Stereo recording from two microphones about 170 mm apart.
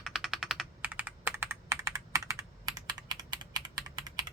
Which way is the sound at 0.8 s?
10° right (ahead or behind).